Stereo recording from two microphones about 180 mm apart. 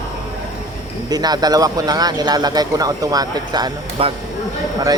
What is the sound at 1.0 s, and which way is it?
Speech, 20° right (ahead or behind).